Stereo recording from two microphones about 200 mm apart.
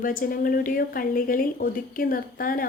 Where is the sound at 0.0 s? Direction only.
45° left (ahead or behind).